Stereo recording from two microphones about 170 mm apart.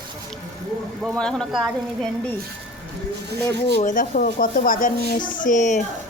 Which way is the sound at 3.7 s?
50° left (ahead or behind).